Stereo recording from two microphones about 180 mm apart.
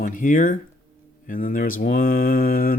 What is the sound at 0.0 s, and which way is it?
Speech, 45° left (ahead or behind).